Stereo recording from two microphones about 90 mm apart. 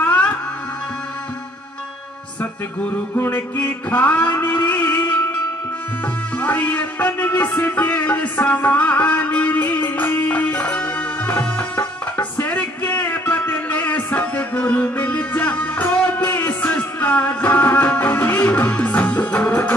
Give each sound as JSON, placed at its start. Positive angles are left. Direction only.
{"t": 0.0, "sound": "music", "side_deg": 15}
{"t": 3.2, "sound": "a sound", "side_deg": 20}
{"t": 6.3, "sound": "music", "side_deg": 15}